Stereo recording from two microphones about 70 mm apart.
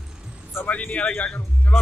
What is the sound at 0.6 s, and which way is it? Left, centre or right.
Speech, left.